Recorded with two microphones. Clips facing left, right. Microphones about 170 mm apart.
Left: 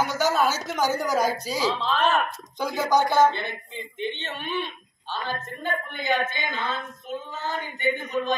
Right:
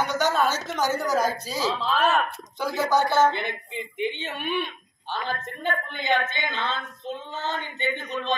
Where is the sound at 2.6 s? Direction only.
15° left (ahead or behind).